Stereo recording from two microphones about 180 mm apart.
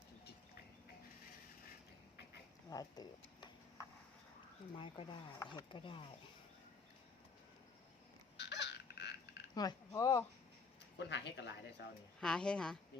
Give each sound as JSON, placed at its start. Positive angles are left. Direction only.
{"t": 2.6, "sound": "speech", "side_deg": 20}
{"t": 4.7, "sound": "speech", "side_deg": 30}
{"t": 8.4, "sound": "a sound", "side_deg": 75}
{"t": 9.6, "sound": "speech", "side_deg": 20}
{"t": 10.9, "sound": "speech", "side_deg": 70}
{"t": 12.2, "sound": "a woman's voice", "side_deg": 5}